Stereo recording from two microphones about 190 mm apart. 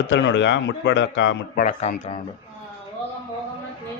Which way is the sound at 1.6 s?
45° left (ahead or behind).